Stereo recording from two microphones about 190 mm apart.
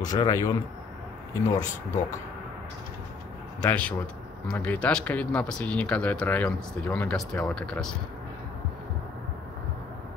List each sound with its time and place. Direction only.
0.0 s a man's voice: 20° left (ahead or behind)
1.6 s speech: 40° left (ahead or behind)
3.6 s speech: 5° left (ahead or behind)